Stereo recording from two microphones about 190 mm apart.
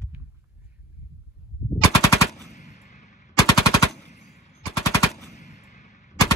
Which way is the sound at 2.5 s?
40° left (ahead or behind).